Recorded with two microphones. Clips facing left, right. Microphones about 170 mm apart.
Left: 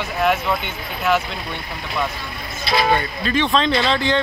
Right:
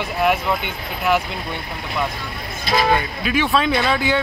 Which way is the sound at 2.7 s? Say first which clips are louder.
Right 1 dB; 45° right (ahead or behind).